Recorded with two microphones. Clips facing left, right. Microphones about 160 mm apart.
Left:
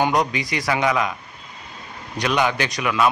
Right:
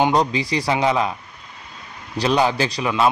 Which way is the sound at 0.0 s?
30° right (ahead or behind).